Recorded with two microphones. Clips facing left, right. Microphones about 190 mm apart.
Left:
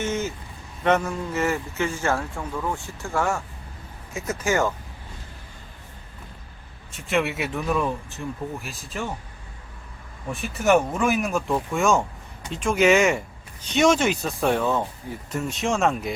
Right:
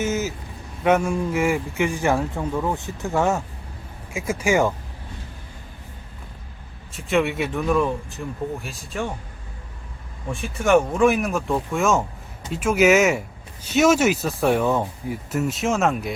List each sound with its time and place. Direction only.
0.0 s vehicle: 5° right (ahead or behind)
0.9 s speech: 10° right (ahead or behind)
6.9 s speech: centre (ahead or behind)
10.4 s speech: centre (ahead or behind)